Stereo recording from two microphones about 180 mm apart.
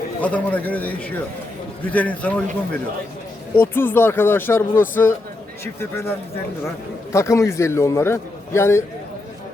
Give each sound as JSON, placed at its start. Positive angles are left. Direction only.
{"t": 0.2, "sound": "a man's voice", "side_deg": 10}
{"t": 3.5, "sound": "a man's voice", "side_deg": 10}